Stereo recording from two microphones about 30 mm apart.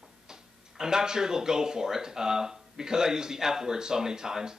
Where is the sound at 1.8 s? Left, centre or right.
Centre.